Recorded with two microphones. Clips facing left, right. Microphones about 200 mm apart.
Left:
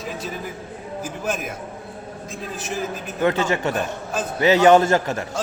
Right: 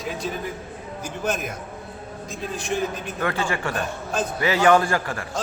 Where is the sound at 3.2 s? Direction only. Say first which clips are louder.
Left 6 dB; 20° left (ahead or behind).